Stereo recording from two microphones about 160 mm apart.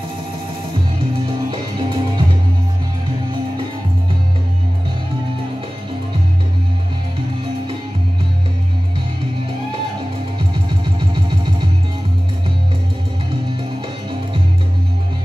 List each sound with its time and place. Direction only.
1.5 s music: 30° right (ahead or behind)